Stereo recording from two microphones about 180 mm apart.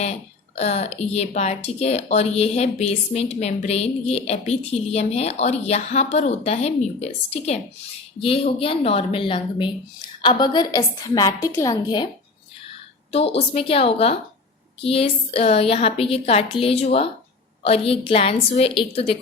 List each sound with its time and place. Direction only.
0.5 s a woman's voice: 35° left (ahead or behind)
13.1 s speech: 35° left (ahead or behind)